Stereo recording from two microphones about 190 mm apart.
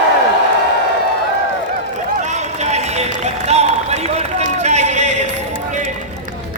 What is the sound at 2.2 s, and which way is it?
Run, 35° right (ahead or behind).